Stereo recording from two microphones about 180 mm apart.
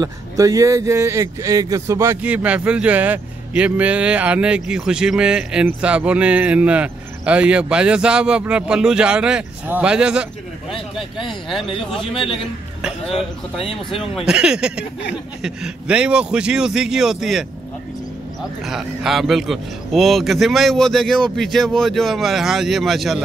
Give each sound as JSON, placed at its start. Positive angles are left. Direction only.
{"t": 0.0, "sound": "a man's voice", "side_deg": -20}
{"t": 11.2, "sound": "a man's voice", "side_deg": 0}
{"t": 11.6, "sound": "speech", "side_deg": 30}
{"t": 14.2, "sound": "a man's voice", "side_deg": -5}
{"t": 18.7, "sound": "a man's voice", "side_deg": 0}